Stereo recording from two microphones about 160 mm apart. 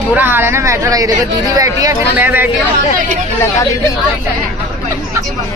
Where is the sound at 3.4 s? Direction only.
20° left (ahead or behind).